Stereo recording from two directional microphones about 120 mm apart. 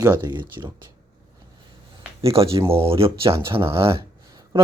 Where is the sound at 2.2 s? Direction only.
50° right (ahead or behind).